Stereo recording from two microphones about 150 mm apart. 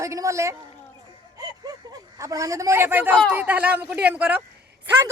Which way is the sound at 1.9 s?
20° right (ahead or behind).